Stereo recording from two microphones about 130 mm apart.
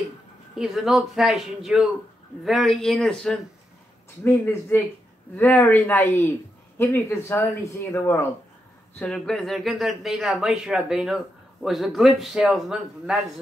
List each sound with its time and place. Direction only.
0.6 s speech: centre (ahead or behind)
4.2 s speech: 15° left (ahead or behind); by 13.2 s 5° right (ahead or behind)